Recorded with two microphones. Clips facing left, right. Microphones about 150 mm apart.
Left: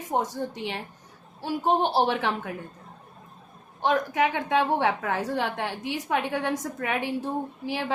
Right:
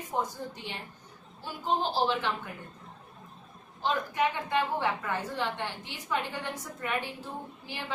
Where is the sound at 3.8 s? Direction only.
90° left.